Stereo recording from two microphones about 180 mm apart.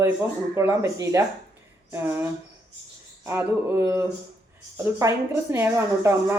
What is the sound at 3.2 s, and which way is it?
Speech, 15° right (ahead or behind).